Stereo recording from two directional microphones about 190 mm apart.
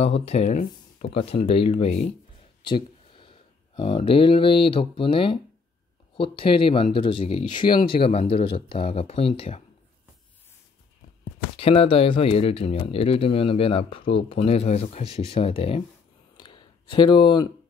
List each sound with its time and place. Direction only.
0.0 s speech: 35° left (ahead or behind)
11.5 s speech: 30° left (ahead or behind)
16.3 s a sound: 25° left (ahead or behind)